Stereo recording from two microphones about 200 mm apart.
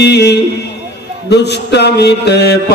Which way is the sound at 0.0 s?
55° left (ahead or behind).